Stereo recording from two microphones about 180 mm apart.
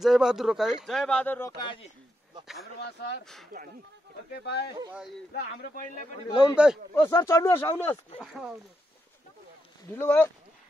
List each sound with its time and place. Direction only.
0.0 s speech: centre (ahead or behind)
1.6 s speech: 25° left (ahead or behind)
2.4 s speech: centre (ahead or behind)
2.8 s speech: 65° left (ahead or behind)
3.5 s speech: 55° right (ahead or behind)
4.3 s speech: 65° left (ahead or behind)
6.3 s speech: 5° right (ahead or behind)
6.9 s speech: 20° left (ahead or behind)
8.2 s speech: centre (ahead or behind)
9.8 s speech: 10° left (ahead or behind)